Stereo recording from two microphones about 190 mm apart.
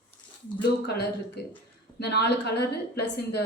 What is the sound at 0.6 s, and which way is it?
A woman's voice, 60° left (ahead or behind).